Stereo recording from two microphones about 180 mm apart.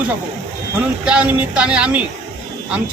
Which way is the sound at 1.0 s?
5° right (ahead or behind).